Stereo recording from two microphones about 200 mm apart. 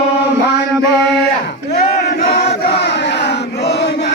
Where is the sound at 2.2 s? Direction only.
55° left (ahead or behind).